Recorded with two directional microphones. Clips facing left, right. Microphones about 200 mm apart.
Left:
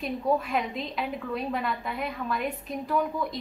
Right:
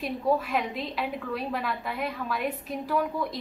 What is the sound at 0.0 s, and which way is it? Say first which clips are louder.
A woman's voice: even; centre (ahead or behind).